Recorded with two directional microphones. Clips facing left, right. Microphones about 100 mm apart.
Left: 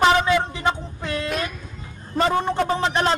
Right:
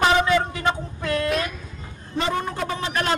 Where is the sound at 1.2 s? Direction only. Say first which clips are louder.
Right 2 dB; centre (ahead or behind).